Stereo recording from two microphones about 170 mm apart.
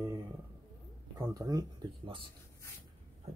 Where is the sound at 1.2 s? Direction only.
20° right (ahead or behind).